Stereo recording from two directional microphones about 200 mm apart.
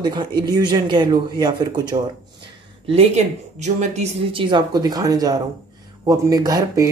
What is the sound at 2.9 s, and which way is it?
A woman's voice, 35° right (ahead or behind).